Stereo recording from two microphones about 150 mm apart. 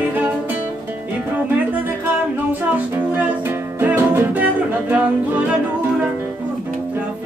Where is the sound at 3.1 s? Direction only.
10° right (ahead or behind).